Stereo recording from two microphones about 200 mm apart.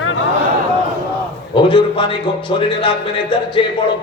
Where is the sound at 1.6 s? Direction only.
25° left (ahead or behind).